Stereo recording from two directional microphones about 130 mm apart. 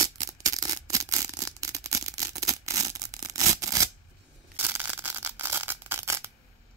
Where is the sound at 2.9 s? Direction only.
25° right (ahead or behind).